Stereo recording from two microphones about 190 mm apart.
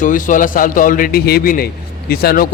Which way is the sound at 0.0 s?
45° left (ahead or behind).